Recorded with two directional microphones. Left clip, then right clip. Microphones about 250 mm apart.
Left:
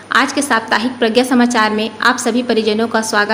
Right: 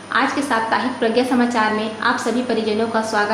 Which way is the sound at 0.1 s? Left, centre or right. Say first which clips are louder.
Left 5 dB; left.